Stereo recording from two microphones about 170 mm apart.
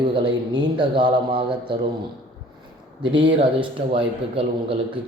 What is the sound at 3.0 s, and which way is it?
A man's voice, 30° right (ahead or behind).